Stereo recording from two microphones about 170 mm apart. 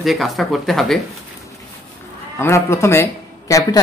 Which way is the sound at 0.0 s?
Centre (ahead or behind).